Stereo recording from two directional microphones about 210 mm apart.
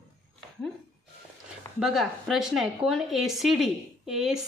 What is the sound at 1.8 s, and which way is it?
Speech, centre (ahead or behind).